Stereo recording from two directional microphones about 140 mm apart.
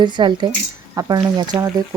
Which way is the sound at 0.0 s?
35° right (ahead or behind).